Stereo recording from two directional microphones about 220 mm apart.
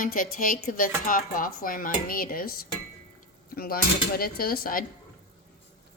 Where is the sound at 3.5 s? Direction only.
45° left (ahead or behind).